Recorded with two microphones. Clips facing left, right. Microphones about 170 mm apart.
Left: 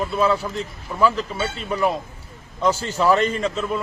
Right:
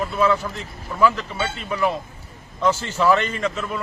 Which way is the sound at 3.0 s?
35° left (ahead or behind).